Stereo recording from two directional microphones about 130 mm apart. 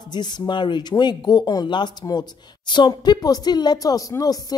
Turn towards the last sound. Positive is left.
turn(degrees=25)  # may be behind; listen again after turning